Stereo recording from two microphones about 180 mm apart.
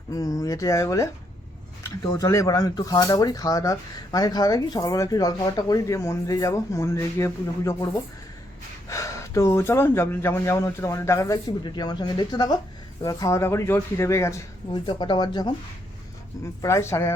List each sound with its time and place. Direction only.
0.1 s speech: 20° left (ahead or behind)
2.2 s speech: 20° left (ahead or behind)
8.9 s speech: 20° left (ahead or behind)
16.6 s speech: 20° left (ahead or behind)